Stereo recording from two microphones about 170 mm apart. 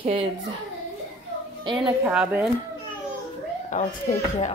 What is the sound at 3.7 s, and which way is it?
Speech, 45° left (ahead or behind).